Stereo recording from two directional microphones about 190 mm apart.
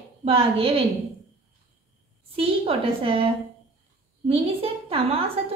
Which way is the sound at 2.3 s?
30° right (ahead or behind).